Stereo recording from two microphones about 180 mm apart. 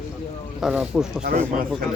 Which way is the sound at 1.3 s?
50° right (ahead or behind).